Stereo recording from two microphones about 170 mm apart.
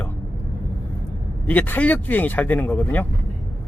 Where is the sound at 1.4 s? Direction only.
10° left (ahead or behind).